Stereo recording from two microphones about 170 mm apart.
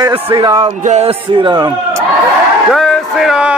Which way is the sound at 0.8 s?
40° right (ahead or behind).